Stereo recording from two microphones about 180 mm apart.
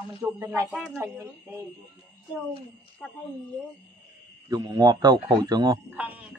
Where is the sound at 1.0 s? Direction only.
15° right (ahead or behind).